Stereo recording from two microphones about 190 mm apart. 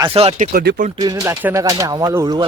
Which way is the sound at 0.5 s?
55° right (ahead or behind).